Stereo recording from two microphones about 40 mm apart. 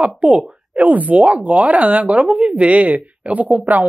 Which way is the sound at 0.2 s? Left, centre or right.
Right.